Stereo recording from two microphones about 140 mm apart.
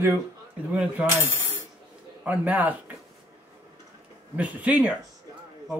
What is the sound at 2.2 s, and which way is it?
Speech, 10° right (ahead or behind).